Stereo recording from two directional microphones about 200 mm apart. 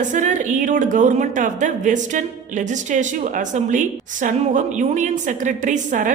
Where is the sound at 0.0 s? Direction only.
40° right (ahead or behind).